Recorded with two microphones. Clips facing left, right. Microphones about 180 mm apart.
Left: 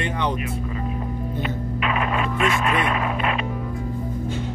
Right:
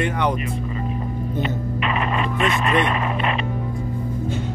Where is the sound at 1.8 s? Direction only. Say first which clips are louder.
Even; 5° left (ahead or behind).